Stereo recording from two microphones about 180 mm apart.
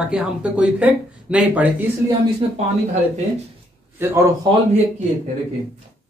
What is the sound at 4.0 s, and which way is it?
Speech, 15° right (ahead or behind).